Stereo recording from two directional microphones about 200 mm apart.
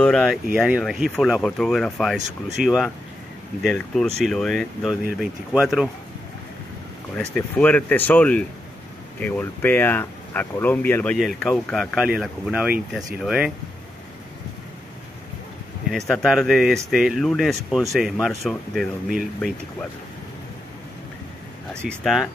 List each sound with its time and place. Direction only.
0.0 s speech: 5° left (ahead or behind)
7.2 s speech: 5° left (ahead or behind)
15.9 s speech: centre (ahead or behind)
21.8 s speech: centre (ahead or behind)